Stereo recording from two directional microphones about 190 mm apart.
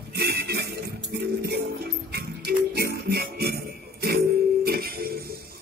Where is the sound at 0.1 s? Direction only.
60° right (ahead or behind).